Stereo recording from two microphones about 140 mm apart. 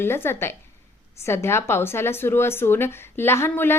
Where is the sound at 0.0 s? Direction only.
15° left (ahead or behind).